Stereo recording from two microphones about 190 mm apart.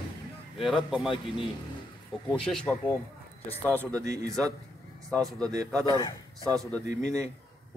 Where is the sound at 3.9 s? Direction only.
15° right (ahead or behind).